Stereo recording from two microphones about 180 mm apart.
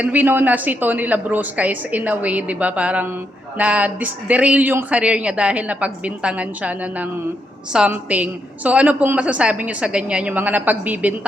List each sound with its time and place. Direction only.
0.0 s a woman's voice: 10° right (ahead or behind)